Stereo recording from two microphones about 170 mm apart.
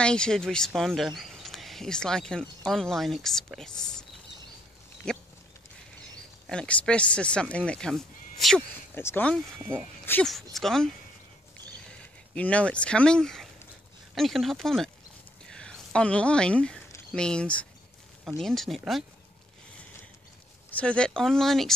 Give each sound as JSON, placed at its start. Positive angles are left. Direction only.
{"t": 0.0, "sound": "speech", "side_deg": 5}
{"t": 5.1, "sound": "speech", "side_deg": 5}
{"t": 6.4, "sound": "speech", "side_deg": 5}
{"t": 8.9, "sound": "speech", "side_deg": 10}
{"t": 15.4, "sound": "a sound", "side_deg": 5}
{"t": 17.1, "sound": "speech", "side_deg": 5}
{"t": 20.7, "sound": "speech", "side_deg": 5}